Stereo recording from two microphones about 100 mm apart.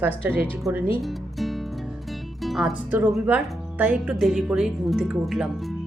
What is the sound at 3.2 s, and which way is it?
Speech, 15° right (ahead or behind).